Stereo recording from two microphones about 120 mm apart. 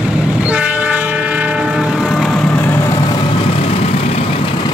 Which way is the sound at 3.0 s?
40° left (ahead or behind).